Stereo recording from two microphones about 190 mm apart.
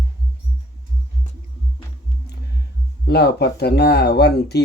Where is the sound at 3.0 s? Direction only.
60° left (ahead or behind).